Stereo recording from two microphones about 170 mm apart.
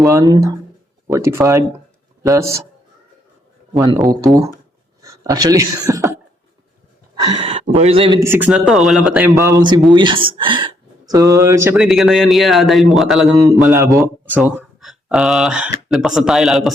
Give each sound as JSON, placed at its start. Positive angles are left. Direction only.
{"t": 0.0, "sound": "speech", "side_deg": -20}
{"t": 5.0, "sound": "speech", "side_deg": -20}
{"t": 7.3, "sound": "a man's voice", "side_deg": -30}
{"t": 8.2, "sound": "speech", "side_deg": -10}
{"t": 9.3, "sound": "speech", "side_deg": -20}
{"t": 11.8, "sound": "speech", "side_deg": 0}
{"t": 13.4, "sound": "speech", "side_deg": -20}
{"t": 14.3, "sound": "speech", "side_deg": -5}